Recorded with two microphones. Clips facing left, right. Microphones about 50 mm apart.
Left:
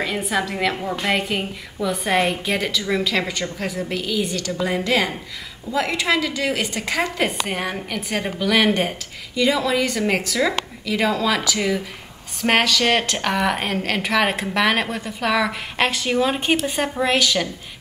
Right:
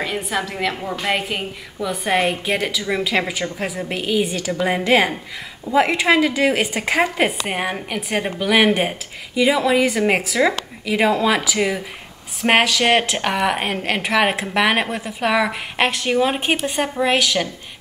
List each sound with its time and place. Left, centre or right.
0.0 s a woman's voice: centre